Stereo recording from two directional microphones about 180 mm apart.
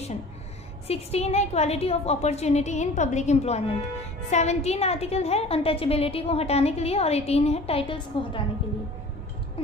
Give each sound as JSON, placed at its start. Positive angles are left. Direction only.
{"t": 0.8, "sound": "a woman's voice", "side_deg": 35}